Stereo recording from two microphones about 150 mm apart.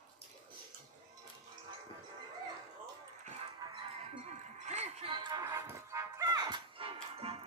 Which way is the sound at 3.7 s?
45° right (ahead or behind).